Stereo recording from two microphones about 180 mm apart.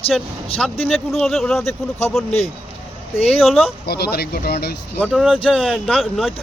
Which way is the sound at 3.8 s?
60° left (ahead or behind).